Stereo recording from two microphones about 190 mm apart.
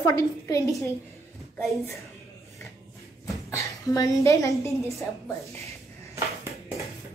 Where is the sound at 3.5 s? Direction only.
15° left (ahead or behind).